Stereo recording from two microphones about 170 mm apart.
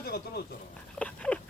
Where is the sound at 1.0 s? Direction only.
5° left (ahead or behind).